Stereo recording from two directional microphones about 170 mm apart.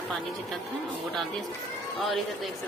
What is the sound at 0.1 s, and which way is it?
Speech, centre (ahead or behind).